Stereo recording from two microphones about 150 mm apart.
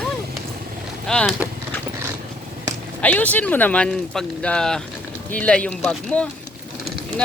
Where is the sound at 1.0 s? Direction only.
5° left (ahead or behind).